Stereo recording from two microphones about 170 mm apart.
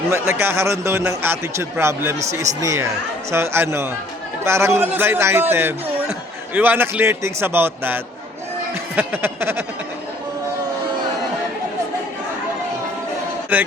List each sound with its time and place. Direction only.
0.1 s a man's voice: 15° right (ahead or behind)
13.5 s a man's voice: 10° right (ahead or behind)